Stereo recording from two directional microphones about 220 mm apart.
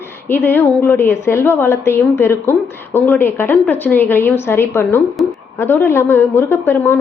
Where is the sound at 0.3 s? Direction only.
10° left (ahead or behind).